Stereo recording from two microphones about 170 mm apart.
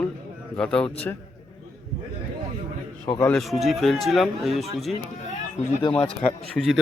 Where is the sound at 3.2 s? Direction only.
Centre (ahead or behind).